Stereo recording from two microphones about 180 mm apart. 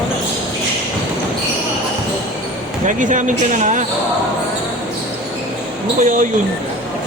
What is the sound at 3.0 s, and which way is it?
Speech, 45° right (ahead or behind).